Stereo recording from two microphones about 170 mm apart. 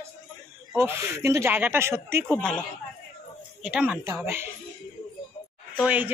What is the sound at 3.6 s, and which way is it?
Speech, 10° right (ahead or behind).